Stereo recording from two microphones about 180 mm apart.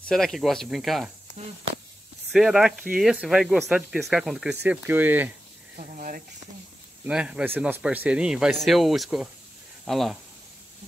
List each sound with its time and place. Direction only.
0.1 s speech: centre (ahead or behind)
2.3 s speech: centre (ahead or behind)
5.8 s speech: 45° right (ahead or behind)
7.1 s speech: 5° right (ahead or behind)